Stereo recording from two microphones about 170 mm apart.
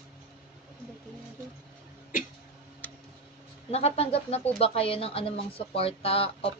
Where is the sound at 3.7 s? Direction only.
35° left (ahead or behind).